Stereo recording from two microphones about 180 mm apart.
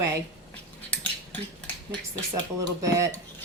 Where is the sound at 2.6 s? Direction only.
15° right (ahead or behind).